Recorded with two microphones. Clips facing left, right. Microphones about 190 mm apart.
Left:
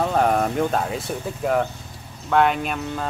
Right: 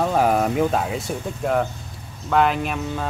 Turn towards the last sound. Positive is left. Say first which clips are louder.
# right 1 dB
turn(degrees=0)  # may be behind; listen again after turning